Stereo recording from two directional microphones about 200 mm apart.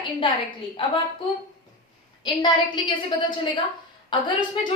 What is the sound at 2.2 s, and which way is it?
A woman's voice, 25° left (ahead or behind).